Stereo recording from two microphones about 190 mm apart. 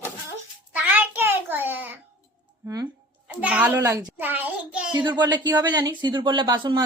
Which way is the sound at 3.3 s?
5° right (ahead or behind).